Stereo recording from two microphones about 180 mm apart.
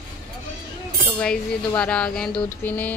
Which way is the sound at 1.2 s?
5° left (ahead or behind).